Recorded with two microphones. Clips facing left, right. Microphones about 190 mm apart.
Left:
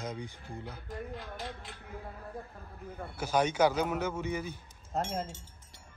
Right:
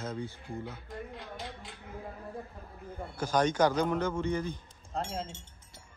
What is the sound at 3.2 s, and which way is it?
Speech, 10° left (ahead or behind).